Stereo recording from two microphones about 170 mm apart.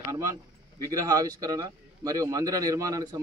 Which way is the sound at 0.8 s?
20° right (ahead or behind).